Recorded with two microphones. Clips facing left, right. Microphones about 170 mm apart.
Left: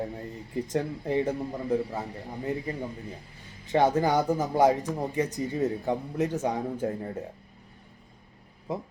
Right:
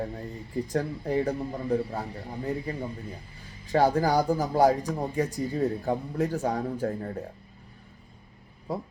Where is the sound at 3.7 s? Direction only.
20° left (ahead or behind).